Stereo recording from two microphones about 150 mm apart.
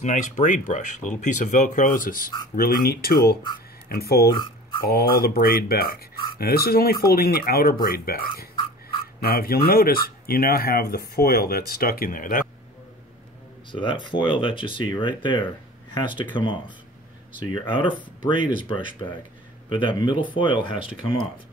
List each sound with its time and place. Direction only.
0.0 s speech: 55° left (ahead or behind); by 2.3 s 70° left (ahead or behind)
2.5 s speech: 85° left
4.4 s a sound: 35° left (ahead or behind)
5.2 s speech: 90° left; by 12.4 s 65° left (ahead or behind)
13.7 s speech: 35° left (ahead or behind)